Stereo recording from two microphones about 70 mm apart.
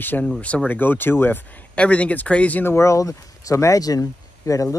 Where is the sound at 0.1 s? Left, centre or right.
Centre.